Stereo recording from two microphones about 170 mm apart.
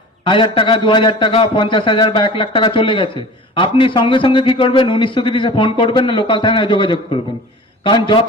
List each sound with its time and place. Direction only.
0.3 s a man's voice: 30° left (ahead or behind)